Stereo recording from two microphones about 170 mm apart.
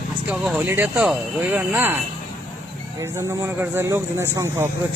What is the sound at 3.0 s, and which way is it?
Speech, 20° right (ahead or behind).